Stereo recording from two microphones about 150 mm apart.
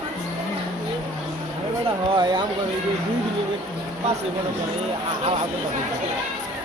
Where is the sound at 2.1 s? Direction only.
30° right (ahead or behind).